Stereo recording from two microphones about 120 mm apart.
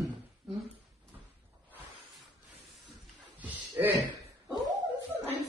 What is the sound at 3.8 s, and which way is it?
Speech, 15° right (ahead or behind).